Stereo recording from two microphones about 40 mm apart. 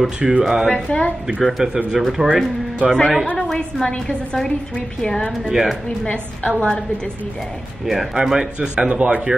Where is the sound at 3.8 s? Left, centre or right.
Left.